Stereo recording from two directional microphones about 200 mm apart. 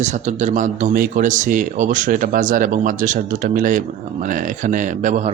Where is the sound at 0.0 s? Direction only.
35° right (ahead or behind).